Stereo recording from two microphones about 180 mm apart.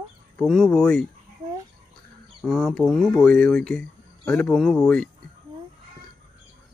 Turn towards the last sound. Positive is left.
turn(degrees=5)  # may be behind; listen again after turning